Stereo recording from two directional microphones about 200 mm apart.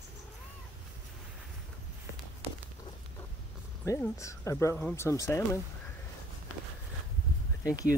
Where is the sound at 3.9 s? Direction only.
15° left (ahead or behind).